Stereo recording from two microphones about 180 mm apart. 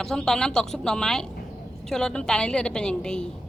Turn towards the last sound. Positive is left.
turn(degrees=5)  # may be behind; listen again after turning